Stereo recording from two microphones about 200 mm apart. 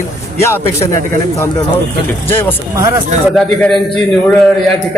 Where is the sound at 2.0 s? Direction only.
10° left (ahead or behind).